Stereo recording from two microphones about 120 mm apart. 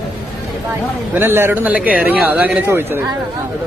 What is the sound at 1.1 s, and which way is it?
Speech, 20° right (ahead or behind).